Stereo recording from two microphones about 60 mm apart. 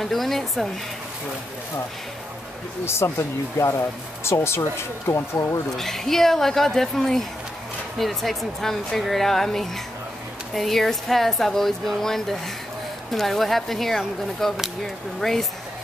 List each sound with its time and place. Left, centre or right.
0.0 s speech: centre
2.8 s speech: left
5.8 s speech: centre